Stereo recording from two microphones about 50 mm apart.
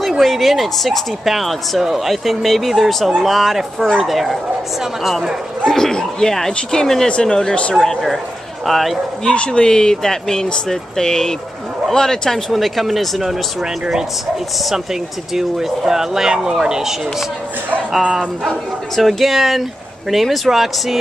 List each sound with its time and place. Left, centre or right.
0.2 s speech: centre
5.7 s speech: centre
7.7 s speech: centre
9.3 s speech: centre
12.4 s speech: centre
15.3 s speech: centre
18.9 s speech: centre